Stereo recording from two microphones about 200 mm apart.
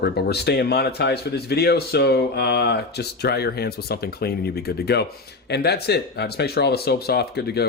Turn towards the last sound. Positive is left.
turn(degrees=55)  # may be behind; listen again after turning